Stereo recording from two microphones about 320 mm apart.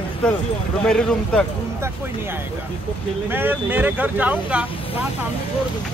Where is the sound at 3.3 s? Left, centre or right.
Centre.